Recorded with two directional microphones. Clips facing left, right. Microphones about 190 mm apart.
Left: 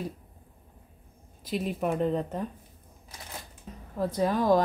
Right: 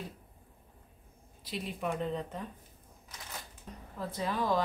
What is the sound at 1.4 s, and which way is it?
Speech, 50° left (ahead or behind).